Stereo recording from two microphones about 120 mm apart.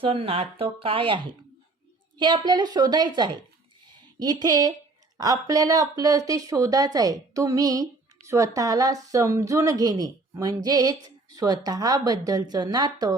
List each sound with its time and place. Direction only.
0.0 s a woman's voice: 50° right (ahead or behind); by 13.1 s 35° right (ahead or behind)